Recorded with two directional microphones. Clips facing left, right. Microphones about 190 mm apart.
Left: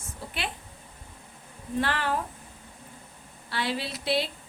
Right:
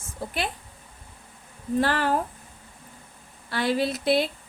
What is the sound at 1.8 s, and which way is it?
Speech, 40° right (ahead or behind).